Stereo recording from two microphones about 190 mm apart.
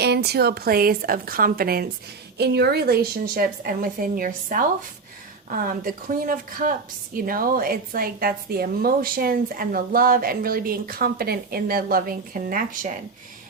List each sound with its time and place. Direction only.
0.0 s a woman's voice: 60° right (ahead or behind)